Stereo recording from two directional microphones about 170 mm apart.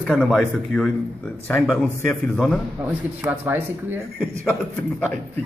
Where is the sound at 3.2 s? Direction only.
10° right (ahead or behind).